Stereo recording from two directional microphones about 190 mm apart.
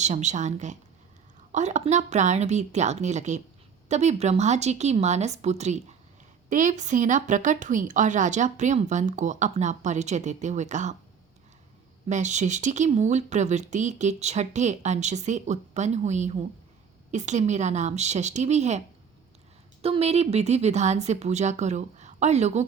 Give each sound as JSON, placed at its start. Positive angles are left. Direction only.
{"t": 0.0, "sound": "speech", "side_deg": -40}
{"t": 12.0, "sound": "speech", "side_deg": -40}
{"t": 19.8, "sound": "speech", "side_deg": -30}